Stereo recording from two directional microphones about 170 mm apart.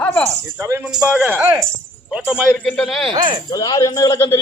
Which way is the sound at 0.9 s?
5° right (ahead or behind).